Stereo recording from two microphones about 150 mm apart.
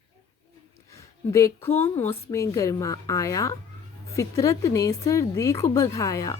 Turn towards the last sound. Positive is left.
turn(degrees=20)  # may be behind; listen again after turning